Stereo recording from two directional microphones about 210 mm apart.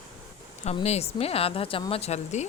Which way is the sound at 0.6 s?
30° left (ahead or behind).